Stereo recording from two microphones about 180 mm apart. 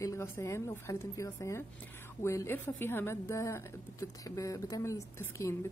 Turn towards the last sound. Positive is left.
turn(degrees=15)  # may be behind; listen again after turning